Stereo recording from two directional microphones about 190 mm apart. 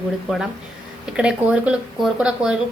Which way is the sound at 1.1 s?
5° right (ahead or behind).